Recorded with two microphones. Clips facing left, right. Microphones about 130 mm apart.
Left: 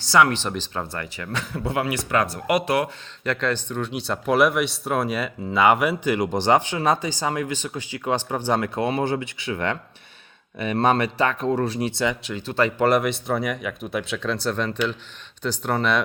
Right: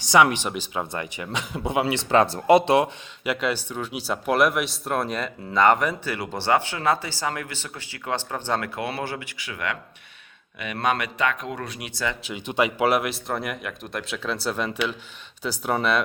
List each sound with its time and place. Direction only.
0.0 s speech: 15° right (ahead or behind)
3.2 s speech: 10° right (ahead or behind); by 8.6 s 15° left (ahead or behind)
8.6 s speech: 25° left (ahead or behind)
12.4 s speech: 15° right (ahead or behind)